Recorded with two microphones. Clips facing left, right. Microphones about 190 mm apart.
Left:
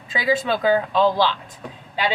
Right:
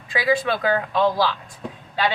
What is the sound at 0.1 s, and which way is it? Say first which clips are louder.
Speech: even; 25° left (ahead or behind).